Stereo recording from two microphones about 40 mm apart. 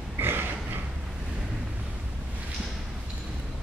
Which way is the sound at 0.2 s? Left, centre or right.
Right.